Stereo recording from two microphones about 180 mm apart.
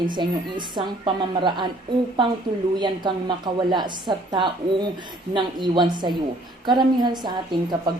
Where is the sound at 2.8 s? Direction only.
25° right (ahead or behind).